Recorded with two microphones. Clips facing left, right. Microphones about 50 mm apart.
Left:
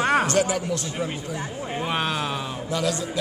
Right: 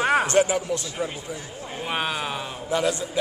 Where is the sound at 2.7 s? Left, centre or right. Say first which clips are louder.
Right 2 dB; right.